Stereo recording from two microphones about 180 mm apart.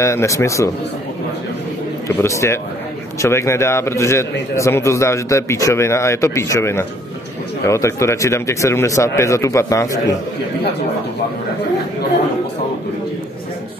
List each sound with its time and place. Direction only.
0.0 s a man's voice: 15° left (ahead or behind)
2.2 s a man's voice: 15° left (ahead or behind)